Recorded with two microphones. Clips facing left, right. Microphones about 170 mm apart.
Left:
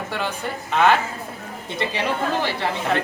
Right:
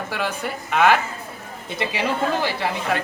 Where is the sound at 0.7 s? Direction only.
5° right (ahead or behind).